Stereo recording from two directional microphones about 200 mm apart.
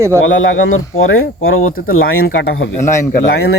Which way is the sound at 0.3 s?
80° left.